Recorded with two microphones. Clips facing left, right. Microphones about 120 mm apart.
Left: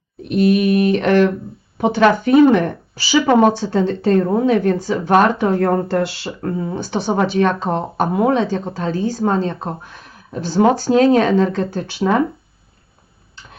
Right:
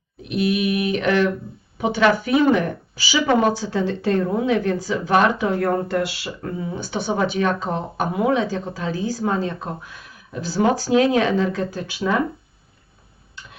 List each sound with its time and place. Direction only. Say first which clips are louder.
0.2 s speech: left 6 dB; 45° left (ahead or behind)